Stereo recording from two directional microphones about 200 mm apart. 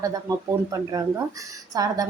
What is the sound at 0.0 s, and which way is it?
Speech, 15° right (ahead or behind).